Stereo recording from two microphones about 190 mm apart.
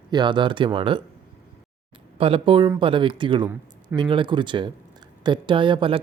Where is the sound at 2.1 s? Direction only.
30° right (ahead or behind).